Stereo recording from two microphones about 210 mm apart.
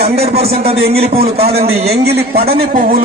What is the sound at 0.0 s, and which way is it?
A man's voice, 30° right (ahead or behind).